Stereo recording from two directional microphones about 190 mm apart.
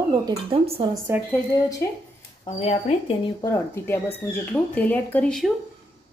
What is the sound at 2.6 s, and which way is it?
Speech, 30° left (ahead or behind).